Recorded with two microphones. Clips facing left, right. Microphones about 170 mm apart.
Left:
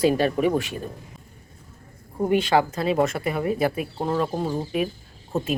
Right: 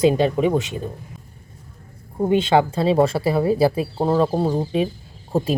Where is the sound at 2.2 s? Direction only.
25° right (ahead or behind).